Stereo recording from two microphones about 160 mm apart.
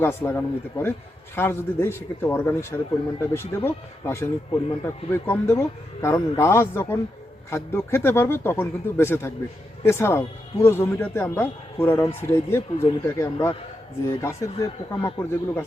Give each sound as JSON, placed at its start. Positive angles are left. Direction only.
{"t": 0.0, "sound": "a man's voice", "side_deg": 15}